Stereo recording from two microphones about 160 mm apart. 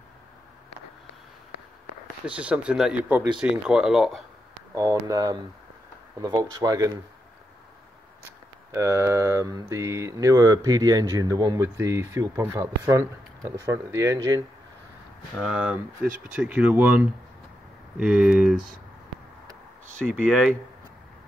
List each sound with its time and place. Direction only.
2.2 s speech: 10° right (ahead or behind)
4.7 s speech: 20° right (ahead or behind)
8.7 s speech: 20° right (ahead or behind)
15.4 s speech: 5° right (ahead or behind)
20.1 s speech: centre (ahead or behind)